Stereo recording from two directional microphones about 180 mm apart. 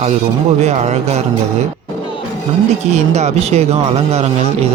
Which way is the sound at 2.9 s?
40° right (ahead or behind).